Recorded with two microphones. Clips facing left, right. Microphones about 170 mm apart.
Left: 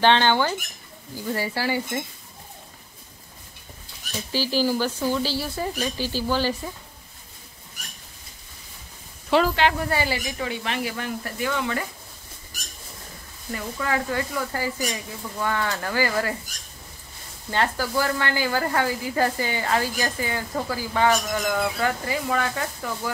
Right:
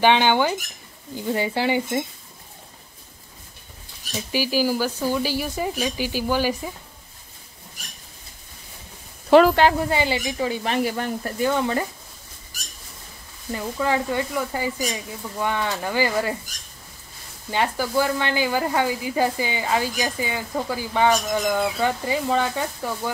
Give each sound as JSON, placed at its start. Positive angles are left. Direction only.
{"t": 0.0, "sound": "speech", "side_deg": -15}
{"t": 4.3, "sound": "speech", "side_deg": -10}
{"t": 9.3, "sound": "speech", "side_deg": -45}
{"t": 9.8, "sound": "speech", "side_deg": -20}
{"t": 13.5, "sound": "speech", "side_deg": -25}
{"t": 17.5, "sound": "speech", "side_deg": -15}